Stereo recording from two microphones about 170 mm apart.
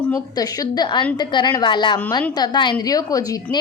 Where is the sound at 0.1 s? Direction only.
20° left (ahead or behind).